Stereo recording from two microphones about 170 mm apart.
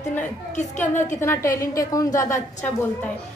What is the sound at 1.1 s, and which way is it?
A woman's voice, 15° left (ahead or behind).